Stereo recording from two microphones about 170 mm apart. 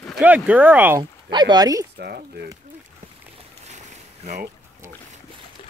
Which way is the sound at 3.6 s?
45° right (ahead or behind).